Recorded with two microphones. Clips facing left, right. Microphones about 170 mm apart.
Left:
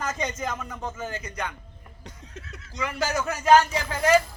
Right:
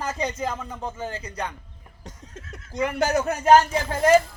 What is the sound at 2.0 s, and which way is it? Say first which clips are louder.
Chuckle: right 1 dB; 45° right (ahead or behind).